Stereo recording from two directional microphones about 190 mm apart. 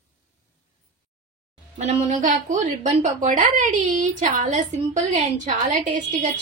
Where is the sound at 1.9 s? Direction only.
40° right (ahead or behind).